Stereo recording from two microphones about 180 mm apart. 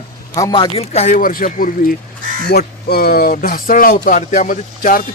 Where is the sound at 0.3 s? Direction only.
20° left (ahead or behind).